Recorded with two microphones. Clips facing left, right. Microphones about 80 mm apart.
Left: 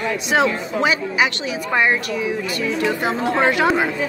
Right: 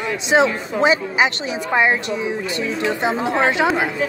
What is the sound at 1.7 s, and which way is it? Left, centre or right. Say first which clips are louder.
A woman's voice: right 1 dB; centre.